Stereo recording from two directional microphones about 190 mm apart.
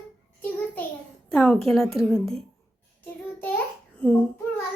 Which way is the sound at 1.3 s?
5° left (ahead or behind).